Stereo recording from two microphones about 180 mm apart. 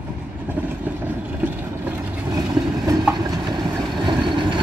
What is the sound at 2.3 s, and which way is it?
Train, 20° right (ahead or behind).